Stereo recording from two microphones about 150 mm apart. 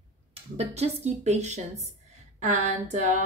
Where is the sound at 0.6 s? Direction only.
45° right (ahead or behind).